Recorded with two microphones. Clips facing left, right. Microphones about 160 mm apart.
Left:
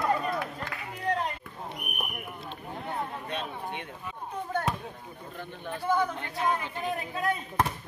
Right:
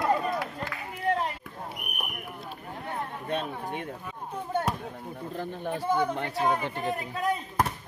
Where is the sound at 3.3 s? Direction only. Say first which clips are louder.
Right 4 dB; 45° right (ahead or behind).